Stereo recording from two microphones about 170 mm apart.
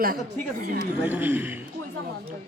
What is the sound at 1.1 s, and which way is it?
Speech, 10° right (ahead or behind).